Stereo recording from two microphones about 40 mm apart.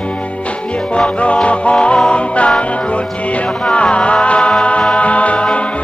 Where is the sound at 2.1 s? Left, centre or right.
Left.